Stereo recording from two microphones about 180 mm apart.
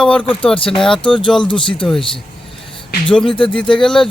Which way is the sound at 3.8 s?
5° left (ahead or behind).